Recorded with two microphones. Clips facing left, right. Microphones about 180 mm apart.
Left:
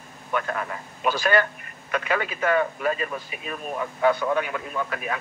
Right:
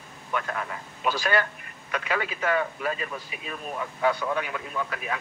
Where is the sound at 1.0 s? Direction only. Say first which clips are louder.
Left 4 dB; 55° left (ahead or behind).